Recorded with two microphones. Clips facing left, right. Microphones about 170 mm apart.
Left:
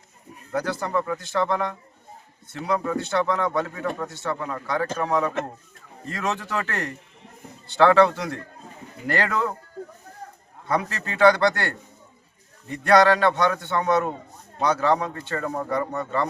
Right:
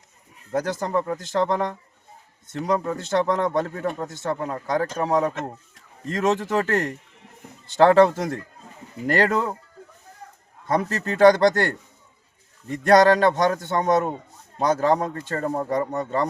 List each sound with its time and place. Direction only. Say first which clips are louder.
0.5 s speech: right 2 dB; 45° right (ahead or behind)
6.1 s speech: right 6 dB; 45° right (ahead or behind)
10.7 s speech: right 3 dB; 45° right (ahead or behind)
12.7 s speech: right 2 dB; 45° right (ahead or behind)